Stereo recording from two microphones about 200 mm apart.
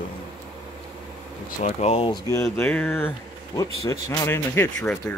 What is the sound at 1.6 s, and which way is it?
Speech, 35° left (ahead or behind).